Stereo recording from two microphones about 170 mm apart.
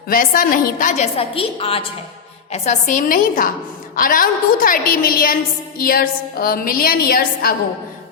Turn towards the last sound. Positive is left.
turn(degrees=60)  # may be behind; listen again after turning